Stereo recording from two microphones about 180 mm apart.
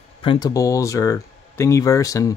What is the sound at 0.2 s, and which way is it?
Speech, 25° left (ahead or behind).